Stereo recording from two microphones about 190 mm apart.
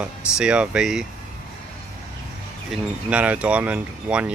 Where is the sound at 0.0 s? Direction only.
5° right (ahead or behind).